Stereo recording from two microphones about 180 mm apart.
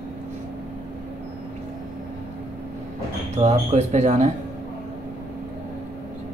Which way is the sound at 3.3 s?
40° right (ahead or behind).